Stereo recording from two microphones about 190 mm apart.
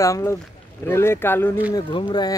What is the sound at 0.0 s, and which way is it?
Speech, 15° left (ahead or behind).